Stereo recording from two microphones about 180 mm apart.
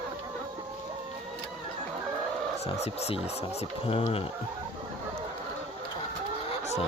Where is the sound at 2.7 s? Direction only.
35° left (ahead or behind).